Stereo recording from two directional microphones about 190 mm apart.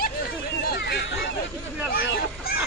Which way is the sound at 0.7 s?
55° left (ahead or behind).